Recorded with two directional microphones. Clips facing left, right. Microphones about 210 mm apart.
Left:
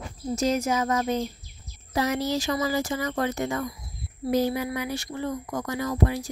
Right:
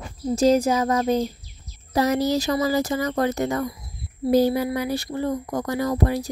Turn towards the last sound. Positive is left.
turn(degrees=-40)  # may be behind; listen again after turning